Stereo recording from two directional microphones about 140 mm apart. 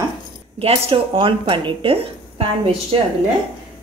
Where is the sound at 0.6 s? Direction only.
45° right (ahead or behind).